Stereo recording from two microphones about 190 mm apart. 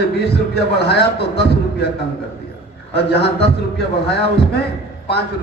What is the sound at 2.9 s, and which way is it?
A man's voice, 60° left (ahead or behind).